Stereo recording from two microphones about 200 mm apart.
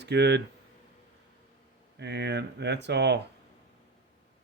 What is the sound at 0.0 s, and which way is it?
Speech, 60° right (ahead or behind).